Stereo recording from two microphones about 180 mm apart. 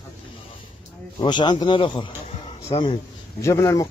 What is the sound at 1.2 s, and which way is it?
A man's voice, 25° left (ahead or behind).